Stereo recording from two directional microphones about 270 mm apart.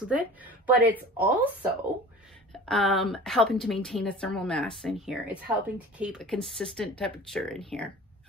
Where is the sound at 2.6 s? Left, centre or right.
Centre.